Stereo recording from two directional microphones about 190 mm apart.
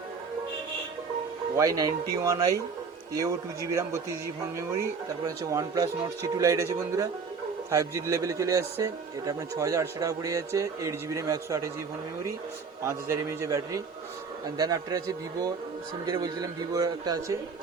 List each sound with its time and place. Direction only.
1.5 s a man's voice: 20° right (ahead or behind)
3.7 s a man's voice: 15° right (ahead or behind)
12.8 s a man's voice: 15° right (ahead or behind)